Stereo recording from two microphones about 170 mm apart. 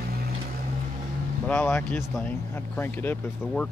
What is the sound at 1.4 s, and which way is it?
Speech, 10° left (ahead or behind).